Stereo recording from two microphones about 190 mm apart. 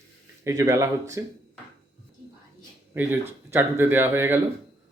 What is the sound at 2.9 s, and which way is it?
Speech, 10° right (ahead or behind).